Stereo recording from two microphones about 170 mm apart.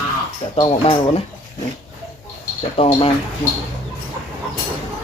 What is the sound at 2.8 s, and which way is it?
Speech, 35° left (ahead or behind).